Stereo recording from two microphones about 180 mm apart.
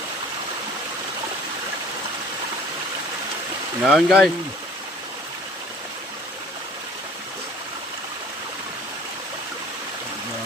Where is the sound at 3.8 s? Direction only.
Centre (ahead or behind).